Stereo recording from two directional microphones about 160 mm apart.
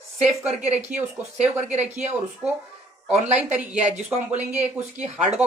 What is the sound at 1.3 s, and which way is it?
Speech, 45° right (ahead or behind).